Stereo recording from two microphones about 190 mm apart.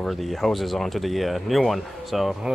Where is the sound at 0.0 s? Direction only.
Centre (ahead or behind).